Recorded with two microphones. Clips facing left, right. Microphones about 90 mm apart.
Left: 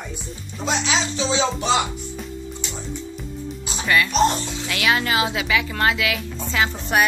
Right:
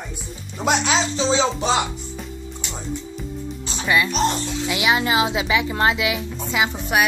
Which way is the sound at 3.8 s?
15° right (ahead or behind).